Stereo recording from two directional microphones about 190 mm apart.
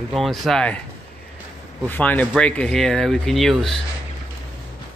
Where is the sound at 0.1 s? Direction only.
Centre (ahead or behind).